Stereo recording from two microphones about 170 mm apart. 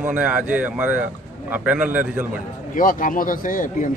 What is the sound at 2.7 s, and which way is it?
Speech, 50° left (ahead or behind).